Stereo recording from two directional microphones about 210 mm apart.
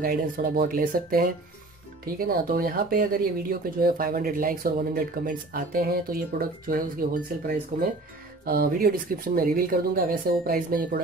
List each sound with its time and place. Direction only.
0.0 s speech: 45° right (ahead or behind)